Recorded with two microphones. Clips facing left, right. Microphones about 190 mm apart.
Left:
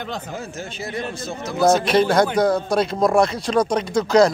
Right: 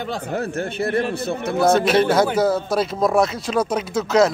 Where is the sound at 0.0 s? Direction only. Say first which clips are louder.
Right 3 dB; 10° right (ahead or behind).